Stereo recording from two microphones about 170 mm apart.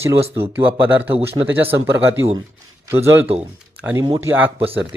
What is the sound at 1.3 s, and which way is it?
Speech, 35° right (ahead or behind).